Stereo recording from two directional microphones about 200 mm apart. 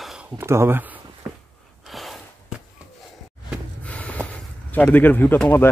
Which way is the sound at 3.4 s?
5° left (ahead or behind).